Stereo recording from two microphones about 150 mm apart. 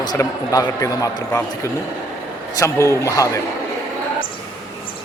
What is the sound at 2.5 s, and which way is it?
Speech, 20° left (ahead or behind).